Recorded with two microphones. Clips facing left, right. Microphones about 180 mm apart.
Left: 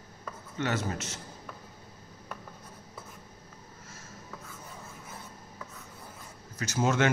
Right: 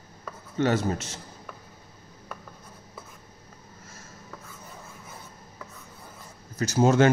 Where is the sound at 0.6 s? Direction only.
35° right (ahead or behind).